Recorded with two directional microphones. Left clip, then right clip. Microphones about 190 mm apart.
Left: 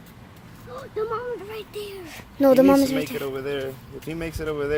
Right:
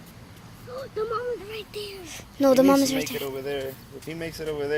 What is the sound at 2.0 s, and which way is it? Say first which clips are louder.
Speech: left 3 dB; 10° left (ahead or behind).